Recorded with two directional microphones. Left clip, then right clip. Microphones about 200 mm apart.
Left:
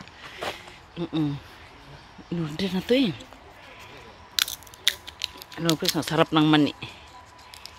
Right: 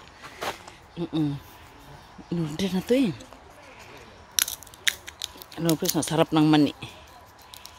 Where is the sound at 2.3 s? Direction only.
15° right (ahead or behind).